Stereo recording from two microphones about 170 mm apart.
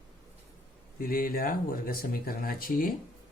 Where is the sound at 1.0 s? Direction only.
60° left (ahead or behind).